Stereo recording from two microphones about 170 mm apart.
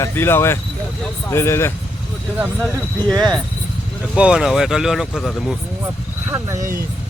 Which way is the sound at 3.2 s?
5° left (ahead or behind).